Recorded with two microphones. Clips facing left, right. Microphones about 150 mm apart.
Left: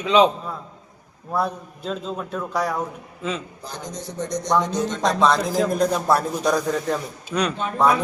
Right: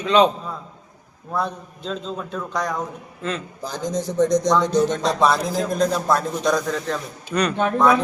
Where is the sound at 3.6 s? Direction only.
90° right.